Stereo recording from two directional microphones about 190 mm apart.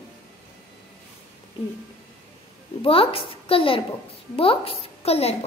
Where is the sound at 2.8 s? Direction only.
30° left (ahead or behind).